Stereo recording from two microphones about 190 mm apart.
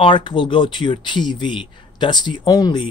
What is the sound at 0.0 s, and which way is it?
Speech, 25° left (ahead or behind).